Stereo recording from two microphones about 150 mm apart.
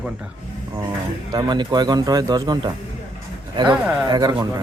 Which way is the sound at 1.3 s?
30° right (ahead or behind).